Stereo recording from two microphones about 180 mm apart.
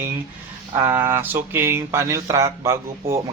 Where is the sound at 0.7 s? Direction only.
20° right (ahead or behind).